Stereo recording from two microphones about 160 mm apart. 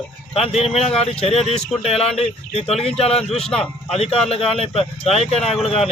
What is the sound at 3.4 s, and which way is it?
Speech, 5° left (ahead or behind).